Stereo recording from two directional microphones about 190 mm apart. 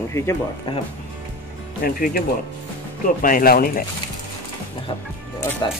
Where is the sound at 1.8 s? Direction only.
50° left (ahead or behind).